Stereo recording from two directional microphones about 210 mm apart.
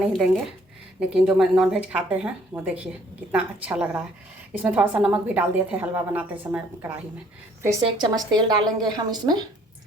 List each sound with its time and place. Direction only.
0.9 s a woman's voice: 5° right (ahead or behind); by 9.4 s 20° right (ahead or behind)